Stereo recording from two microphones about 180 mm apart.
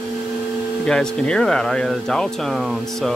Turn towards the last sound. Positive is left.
turn(degrees=0)  # may be behind; listen again after turning